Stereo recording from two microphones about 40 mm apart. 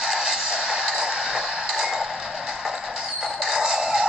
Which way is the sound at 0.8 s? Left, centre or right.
Right.